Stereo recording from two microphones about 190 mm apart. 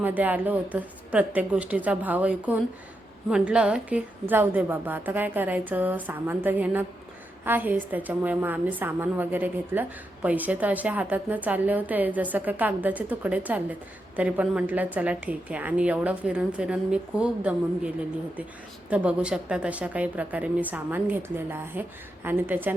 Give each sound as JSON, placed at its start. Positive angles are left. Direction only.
{"t": 0.0, "sound": "a woman's voice", "side_deg": -10}